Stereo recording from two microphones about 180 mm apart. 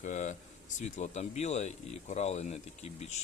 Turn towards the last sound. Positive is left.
turn(degrees=35)  # may be behind; listen again after turning